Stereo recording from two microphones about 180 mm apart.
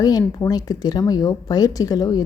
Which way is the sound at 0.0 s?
20° left (ahead or behind).